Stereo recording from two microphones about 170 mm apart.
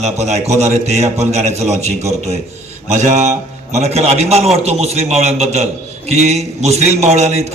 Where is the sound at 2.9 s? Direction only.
45° right (ahead or behind).